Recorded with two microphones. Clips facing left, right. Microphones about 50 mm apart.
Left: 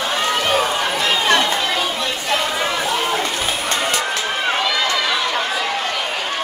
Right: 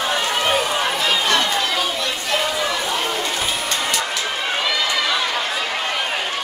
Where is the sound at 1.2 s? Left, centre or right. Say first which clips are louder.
Left 2 dB; centre.